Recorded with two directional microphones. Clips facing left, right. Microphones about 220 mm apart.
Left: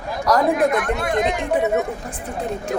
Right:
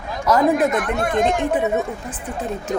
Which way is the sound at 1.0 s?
45° right (ahead or behind).